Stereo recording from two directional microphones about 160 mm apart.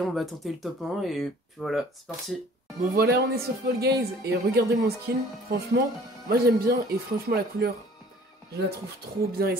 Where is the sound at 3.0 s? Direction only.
80° right.